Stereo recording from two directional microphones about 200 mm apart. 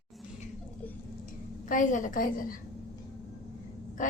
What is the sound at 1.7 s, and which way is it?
Speech, 40° left (ahead or behind).